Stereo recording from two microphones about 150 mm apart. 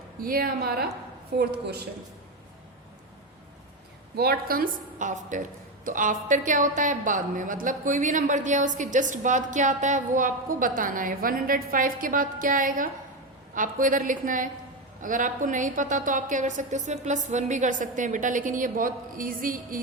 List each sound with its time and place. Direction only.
0.2 s a woman's voice: 75° right (ahead or behind)
4.1 s a woman's voice: 90° right; by 19.8 s 65° right (ahead or behind)